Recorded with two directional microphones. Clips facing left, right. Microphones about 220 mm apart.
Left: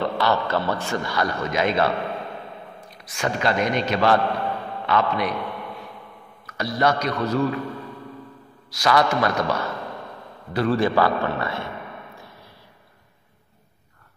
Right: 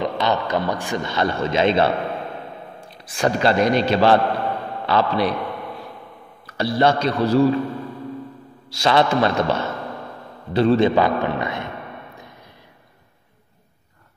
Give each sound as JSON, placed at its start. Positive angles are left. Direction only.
{"t": 0.0, "sound": "a man's voice", "side_deg": -20}
{"t": 6.4, "sound": "a man's voice", "side_deg": -30}
{"t": 8.6, "sound": "a man's voice", "side_deg": -25}